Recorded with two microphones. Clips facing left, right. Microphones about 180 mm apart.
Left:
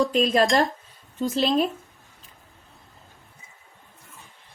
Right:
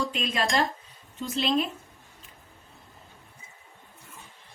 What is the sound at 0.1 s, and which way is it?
A woman's voice, 40° left (ahead or behind).